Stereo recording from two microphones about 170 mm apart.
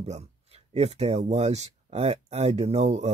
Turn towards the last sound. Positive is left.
turn(degrees=-40)  # may be behind; listen again after turning